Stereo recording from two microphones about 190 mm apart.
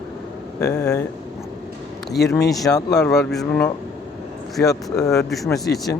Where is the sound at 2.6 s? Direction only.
20° left (ahead or behind).